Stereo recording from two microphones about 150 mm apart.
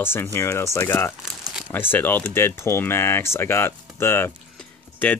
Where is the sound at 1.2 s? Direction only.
5° right (ahead or behind).